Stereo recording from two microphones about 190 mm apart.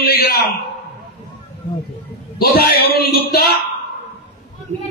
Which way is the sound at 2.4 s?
55° left (ahead or behind).